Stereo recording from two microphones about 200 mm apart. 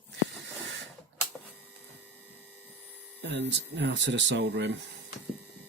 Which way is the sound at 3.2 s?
60° right (ahead or behind).